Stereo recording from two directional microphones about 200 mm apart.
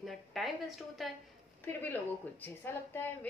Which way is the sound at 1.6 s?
10° left (ahead or behind).